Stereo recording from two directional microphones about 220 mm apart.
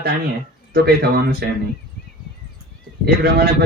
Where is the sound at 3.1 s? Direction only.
45° right (ahead or behind).